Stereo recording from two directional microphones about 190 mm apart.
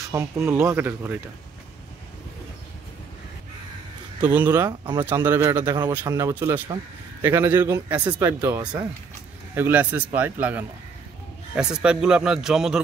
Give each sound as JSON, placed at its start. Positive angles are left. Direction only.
{"t": 0.1, "sound": "speech", "side_deg": -15}
{"t": 4.2, "sound": "speech", "side_deg": -10}
{"t": 4.6, "sound": "a man's voice", "side_deg": -20}